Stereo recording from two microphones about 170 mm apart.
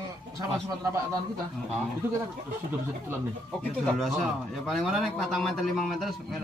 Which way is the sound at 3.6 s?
Centre (ahead or behind).